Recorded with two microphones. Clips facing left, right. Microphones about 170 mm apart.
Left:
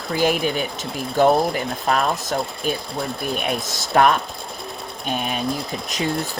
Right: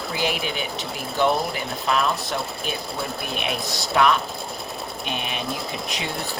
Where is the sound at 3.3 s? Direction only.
45° left (ahead or behind).